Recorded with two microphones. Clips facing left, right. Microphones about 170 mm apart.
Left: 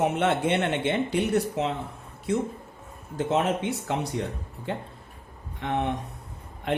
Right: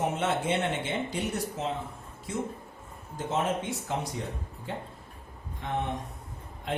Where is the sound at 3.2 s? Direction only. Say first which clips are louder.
Left 5 dB; 70° left (ahead or behind).